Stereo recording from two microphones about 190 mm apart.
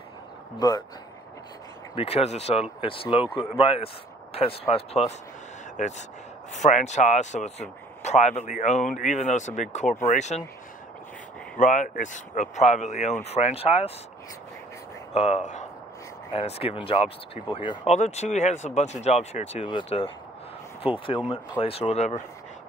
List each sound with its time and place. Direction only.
0.6 s speech: 20° left (ahead or behind)
2.0 s speech: 30° left (ahead or behind)
11.5 s speech: 45° left (ahead or behind)
15.1 s speech: 35° left (ahead or behind)
17.9 s speech: 35° left (ahead or behind)